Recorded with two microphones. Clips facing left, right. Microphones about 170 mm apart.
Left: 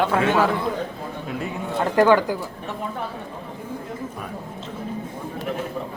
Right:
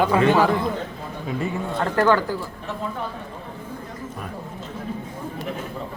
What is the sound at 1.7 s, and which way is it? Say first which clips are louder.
Speech: left 3 dB; 15° left (ahead or behind).